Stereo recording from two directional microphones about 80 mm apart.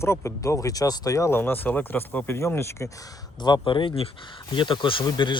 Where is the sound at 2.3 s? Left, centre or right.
Left.